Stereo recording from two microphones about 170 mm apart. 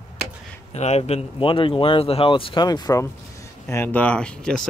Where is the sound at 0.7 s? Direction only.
40° left (ahead or behind).